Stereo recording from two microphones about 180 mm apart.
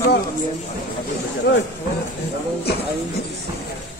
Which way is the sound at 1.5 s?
75° left (ahead or behind).